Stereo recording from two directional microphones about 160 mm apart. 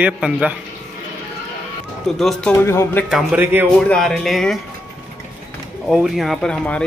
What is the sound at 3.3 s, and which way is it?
Speech, 15° right (ahead or behind).